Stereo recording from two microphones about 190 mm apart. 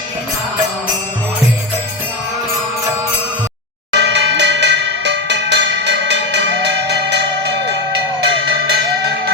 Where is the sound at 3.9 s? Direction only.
65° right (ahead or behind).